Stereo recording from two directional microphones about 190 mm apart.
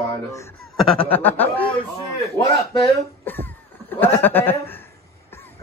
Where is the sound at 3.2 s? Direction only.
10° left (ahead or behind).